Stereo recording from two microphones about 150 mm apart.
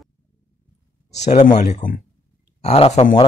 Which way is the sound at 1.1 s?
50° left (ahead or behind).